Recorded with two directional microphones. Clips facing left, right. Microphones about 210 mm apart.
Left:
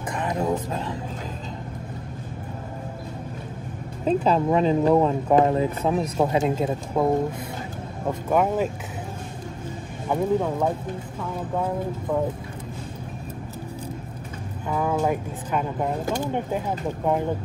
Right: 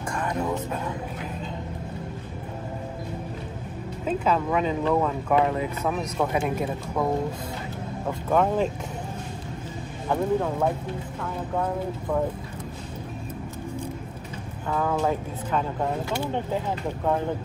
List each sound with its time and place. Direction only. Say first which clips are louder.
0.1 s music: left 3 dB; 20° left (ahead or behind)
4.0 s speech: left 4 dB; 35° left (ahead or behind)
8.3 s speech: even; 10° left (ahead or behind)
10.0 s speech: left 1 dB; 10° left (ahead or behind)
14.7 s speech: left 1 dB; 10° left (ahead or behind)